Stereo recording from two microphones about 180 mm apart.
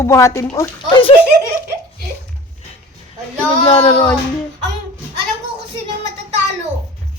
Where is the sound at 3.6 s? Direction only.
30° left (ahead or behind).